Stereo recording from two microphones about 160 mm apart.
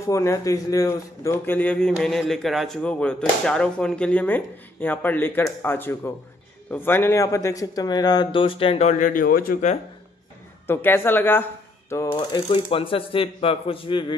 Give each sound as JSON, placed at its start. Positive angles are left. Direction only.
{"t": 0.0, "sound": "a man's voice", "side_deg": 20}
{"t": 10.7, "sound": "speech", "side_deg": 15}